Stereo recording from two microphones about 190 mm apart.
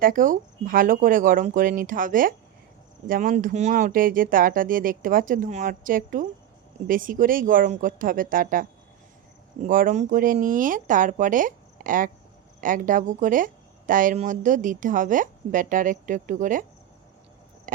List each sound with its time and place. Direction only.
0.0 s speech: 45° right (ahead or behind)
9.6 s speech: 45° right (ahead or behind)